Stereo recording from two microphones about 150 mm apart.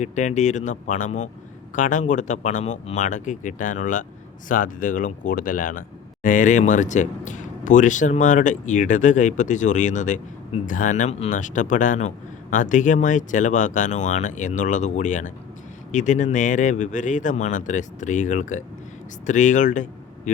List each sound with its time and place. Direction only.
0.0 s a man's voice: 50° left (ahead or behind)